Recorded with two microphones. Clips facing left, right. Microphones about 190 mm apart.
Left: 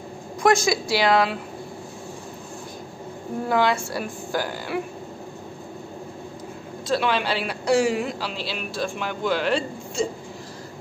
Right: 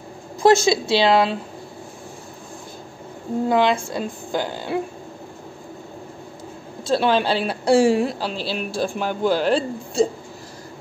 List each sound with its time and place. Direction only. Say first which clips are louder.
0.4 s a woman's voice: right 4 dB; 25° right (ahead or behind)
3.4 s a woman's voice: right 3 dB; 20° right (ahead or behind)
6.9 s a man's voice: right 4 dB; 30° right (ahead or behind)